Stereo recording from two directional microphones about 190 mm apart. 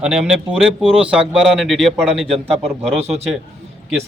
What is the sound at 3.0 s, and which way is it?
Speech, 35° right (ahead or behind).